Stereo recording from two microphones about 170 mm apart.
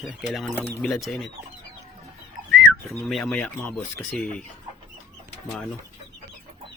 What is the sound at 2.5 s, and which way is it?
Speech, centre (ahead or behind).